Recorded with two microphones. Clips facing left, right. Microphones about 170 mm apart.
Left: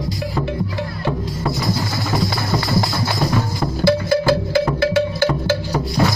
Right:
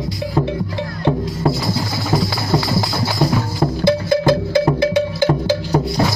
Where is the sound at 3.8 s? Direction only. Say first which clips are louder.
Even; 20° right (ahead or behind).